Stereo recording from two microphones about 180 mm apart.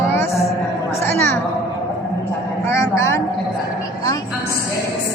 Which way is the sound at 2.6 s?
15° left (ahead or behind).